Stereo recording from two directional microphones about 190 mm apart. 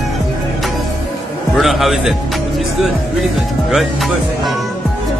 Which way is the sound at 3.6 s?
Centre (ahead or behind).